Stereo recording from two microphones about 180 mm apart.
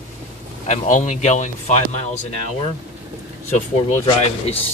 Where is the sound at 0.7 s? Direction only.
45° left (ahead or behind).